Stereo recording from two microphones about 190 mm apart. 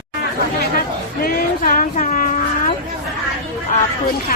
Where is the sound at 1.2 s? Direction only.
50° left (ahead or behind).